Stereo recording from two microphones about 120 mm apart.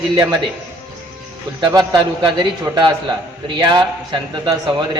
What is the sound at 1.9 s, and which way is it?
A man's voice, 40° right (ahead or behind).